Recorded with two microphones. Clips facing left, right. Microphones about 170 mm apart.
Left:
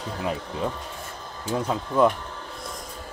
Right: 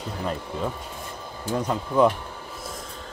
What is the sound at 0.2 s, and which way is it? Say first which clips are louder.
Speech: left 1 dB; 5° left (ahead or behind).